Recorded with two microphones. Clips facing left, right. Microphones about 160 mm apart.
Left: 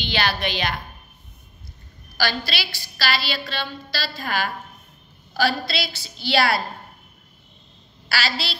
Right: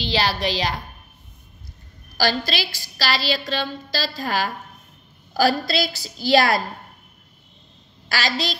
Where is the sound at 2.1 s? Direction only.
40° right (ahead or behind).